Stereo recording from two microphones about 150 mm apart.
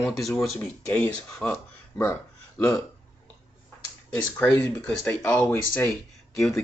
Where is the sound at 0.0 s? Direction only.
Centre (ahead or behind).